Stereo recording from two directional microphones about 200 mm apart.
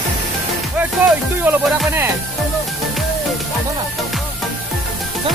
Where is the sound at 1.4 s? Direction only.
10° right (ahead or behind).